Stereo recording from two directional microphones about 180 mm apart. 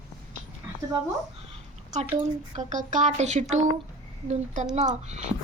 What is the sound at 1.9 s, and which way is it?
Speech, 40° right (ahead or behind).